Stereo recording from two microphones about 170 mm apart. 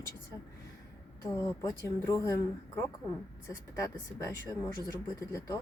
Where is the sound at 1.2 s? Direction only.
20° left (ahead or behind).